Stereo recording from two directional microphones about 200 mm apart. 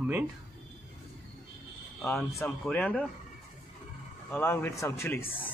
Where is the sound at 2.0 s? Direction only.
10° left (ahead or behind).